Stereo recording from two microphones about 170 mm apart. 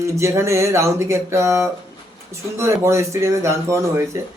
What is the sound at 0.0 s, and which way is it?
A man's voice, 15° right (ahead or behind).